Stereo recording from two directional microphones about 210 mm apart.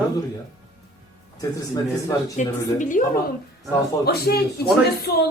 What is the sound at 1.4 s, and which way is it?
Speech, 15° left (ahead or behind).